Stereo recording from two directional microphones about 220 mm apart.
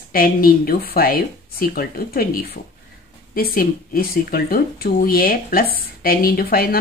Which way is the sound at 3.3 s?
40° left (ahead or behind).